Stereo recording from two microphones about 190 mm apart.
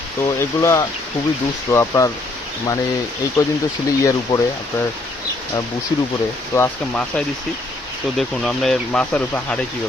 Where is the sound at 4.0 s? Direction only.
15° left (ahead or behind).